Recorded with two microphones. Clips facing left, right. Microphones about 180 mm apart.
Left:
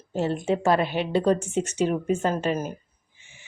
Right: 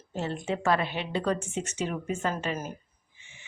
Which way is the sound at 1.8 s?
40° left (ahead or behind).